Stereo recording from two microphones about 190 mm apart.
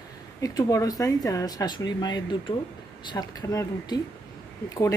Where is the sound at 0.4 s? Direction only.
20° left (ahead or behind).